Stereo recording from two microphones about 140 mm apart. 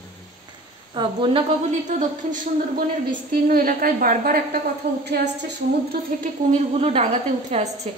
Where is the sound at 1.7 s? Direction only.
60° right (ahead or behind).